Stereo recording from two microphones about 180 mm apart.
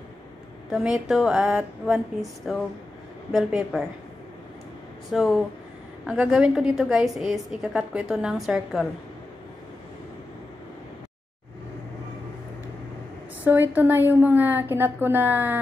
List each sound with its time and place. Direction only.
0.7 s a woman's voice: 5° right (ahead or behind)
5.1 s a woman's voice: 5° right (ahead or behind)
13.4 s a woman's voice: 10° right (ahead or behind)